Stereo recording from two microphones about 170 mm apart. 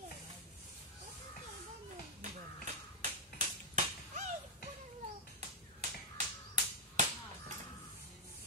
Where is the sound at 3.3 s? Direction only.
45° right (ahead or behind).